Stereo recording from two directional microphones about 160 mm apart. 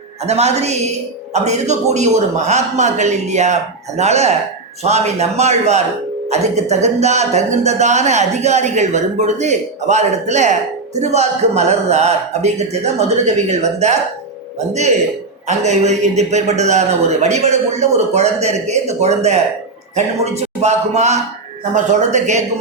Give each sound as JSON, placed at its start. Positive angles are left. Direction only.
{"t": 0.3, "sound": "speech", "side_deg": -40}